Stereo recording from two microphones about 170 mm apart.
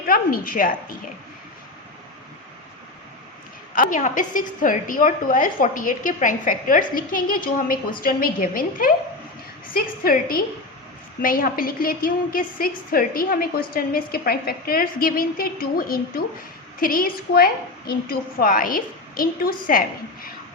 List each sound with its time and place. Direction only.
0.1 s a woman's voice: 55° left (ahead or behind)
3.8 s a woman's voice: 50° left (ahead or behind)